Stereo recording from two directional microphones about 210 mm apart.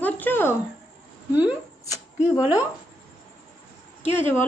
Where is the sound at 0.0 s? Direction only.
10° left (ahead or behind).